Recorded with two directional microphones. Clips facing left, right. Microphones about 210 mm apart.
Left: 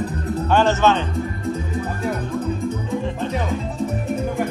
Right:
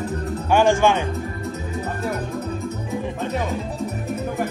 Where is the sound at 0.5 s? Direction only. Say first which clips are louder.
Right 1 dB; 10° right (ahead or behind).